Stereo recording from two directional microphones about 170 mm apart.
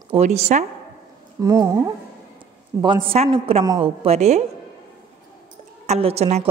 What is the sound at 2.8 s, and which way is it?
Speech, 30° right (ahead or behind).